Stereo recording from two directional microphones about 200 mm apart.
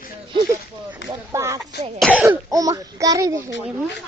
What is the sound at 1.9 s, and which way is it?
Speech, centre (ahead or behind).